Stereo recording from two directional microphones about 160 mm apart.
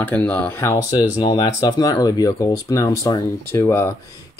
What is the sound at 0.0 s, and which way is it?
Speech, 10° left (ahead or behind).